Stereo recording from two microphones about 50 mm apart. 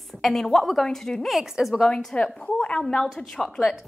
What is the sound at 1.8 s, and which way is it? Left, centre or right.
A woman's voice, centre.